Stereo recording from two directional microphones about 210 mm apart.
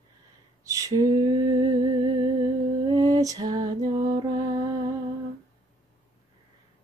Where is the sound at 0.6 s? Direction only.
15° right (ahead or behind).